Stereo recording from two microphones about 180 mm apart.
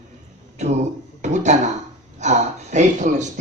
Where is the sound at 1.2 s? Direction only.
40° right (ahead or behind).